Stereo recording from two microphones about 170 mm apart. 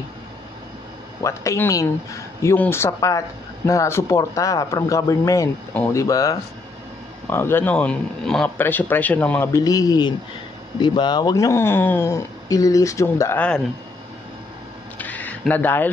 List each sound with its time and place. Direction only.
1.2 s speech: 15° left (ahead or behind)
9.6 s a man's voice: 20° left (ahead or behind)
15.0 s a sound: 10° left (ahead or behind)